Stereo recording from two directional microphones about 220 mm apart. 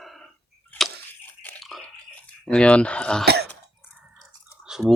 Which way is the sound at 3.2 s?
45° right (ahead or behind).